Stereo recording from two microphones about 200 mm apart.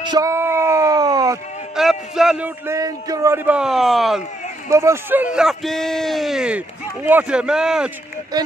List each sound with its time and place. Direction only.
0.0 s a sound: 20° right (ahead or behind)
1.8 s a man's voice: centre (ahead or behind)
4.6 s a man's voice: 15° right (ahead or behind)